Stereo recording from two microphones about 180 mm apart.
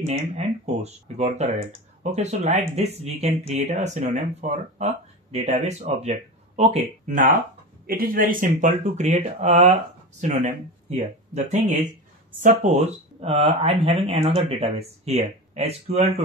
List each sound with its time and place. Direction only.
0.0 s speech: 35° right (ahead or behind)
11.0 s speech: 40° right (ahead or behind)